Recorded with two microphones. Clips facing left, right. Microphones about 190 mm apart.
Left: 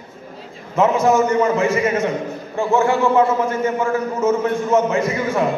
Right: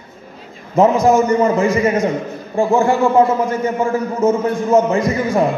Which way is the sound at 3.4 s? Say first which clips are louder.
Right 2 dB; 15° right (ahead or behind).